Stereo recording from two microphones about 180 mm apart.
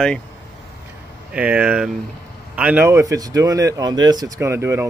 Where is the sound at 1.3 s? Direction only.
5° right (ahead or behind).